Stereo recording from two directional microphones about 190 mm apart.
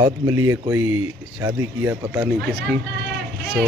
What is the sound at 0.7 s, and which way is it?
Speech, 90° right.